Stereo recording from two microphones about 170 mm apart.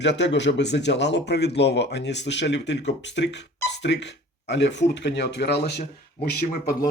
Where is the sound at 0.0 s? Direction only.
90° left.